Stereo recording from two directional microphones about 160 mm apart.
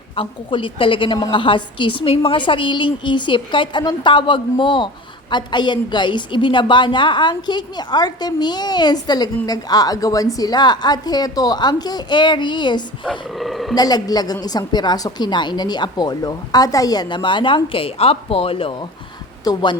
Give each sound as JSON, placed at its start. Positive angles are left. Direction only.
{"t": 0.2, "sound": "a woman's voice", "side_deg": 35}
{"t": 13.1, "sound": "speech", "side_deg": 0}
{"t": 13.7, "sound": "a woman's voice", "side_deg": 25}
{"t": 19.5, "sound": "a woman's voice", "side_deg": 25}